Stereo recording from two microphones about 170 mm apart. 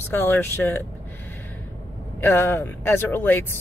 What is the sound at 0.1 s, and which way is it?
Speech, 15° left (ahead or behind).